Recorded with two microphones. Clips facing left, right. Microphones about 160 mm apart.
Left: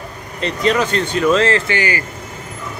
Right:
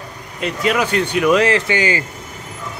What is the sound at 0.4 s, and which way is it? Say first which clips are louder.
Speech: left 1 dB; 10° right (ahead or behind).